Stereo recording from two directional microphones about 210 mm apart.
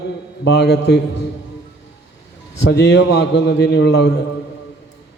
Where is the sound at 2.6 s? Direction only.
55° left (ahead or behind).